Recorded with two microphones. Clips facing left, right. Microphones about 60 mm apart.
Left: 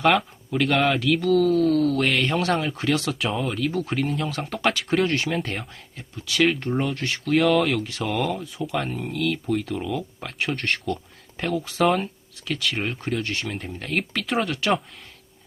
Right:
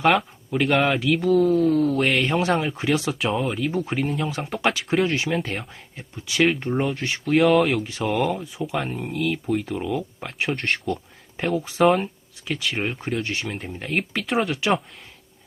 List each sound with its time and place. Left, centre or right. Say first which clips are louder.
0.0 s speech: right 1 dB; centre
2.0 s speech: right 1 dB; centre
3.2 s speech: right 2 dB; centre
3.6 s speech: even; centre
4.3 s speech: right 1 dB; centre
6.0 s speech: right 1 dB; centre